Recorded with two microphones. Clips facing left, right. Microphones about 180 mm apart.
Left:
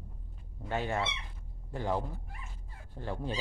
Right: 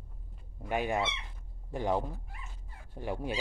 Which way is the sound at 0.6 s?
15° right (ahead or behind).